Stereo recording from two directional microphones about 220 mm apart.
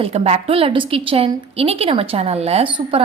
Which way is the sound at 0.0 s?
30° right (ahead or behind).